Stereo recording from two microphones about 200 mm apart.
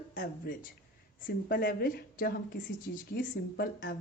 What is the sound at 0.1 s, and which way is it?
Speech, 40° left (ahead or behind).